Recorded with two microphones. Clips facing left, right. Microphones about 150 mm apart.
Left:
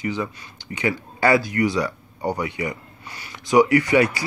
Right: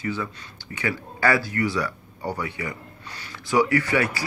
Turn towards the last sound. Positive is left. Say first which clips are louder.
# left 5 dB
turn(degrees=20)  # may be behind; listen again after turning